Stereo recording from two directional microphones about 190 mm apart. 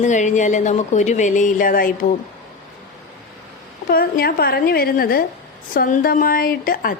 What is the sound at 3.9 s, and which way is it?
A woman's voice, 55° left (ahead or behind).